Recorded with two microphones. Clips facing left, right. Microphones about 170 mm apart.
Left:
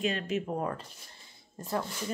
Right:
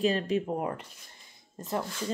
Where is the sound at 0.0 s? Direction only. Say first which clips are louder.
Right 4 dB; 35° right (ahead or behind).